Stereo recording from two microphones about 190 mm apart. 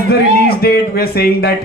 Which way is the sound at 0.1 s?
55° left (ahead or behind).